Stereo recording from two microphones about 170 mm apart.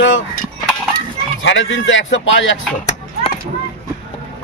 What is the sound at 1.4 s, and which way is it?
A man's voice, 90° left.